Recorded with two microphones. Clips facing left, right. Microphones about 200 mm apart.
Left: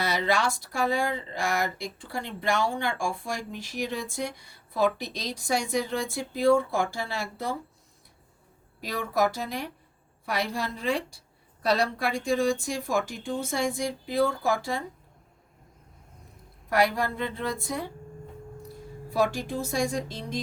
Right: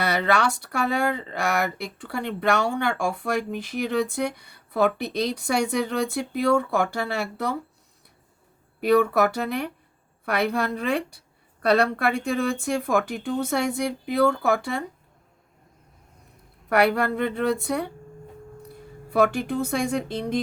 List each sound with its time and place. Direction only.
0.0 s speech: 60° right (ahead or behind)
8.8 s speech: 60° right (ahead or behind)
16.6 s speech: 65° right (ahead or behind)